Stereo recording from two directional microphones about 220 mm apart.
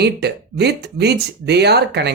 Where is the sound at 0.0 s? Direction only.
50° right (ahead or behind).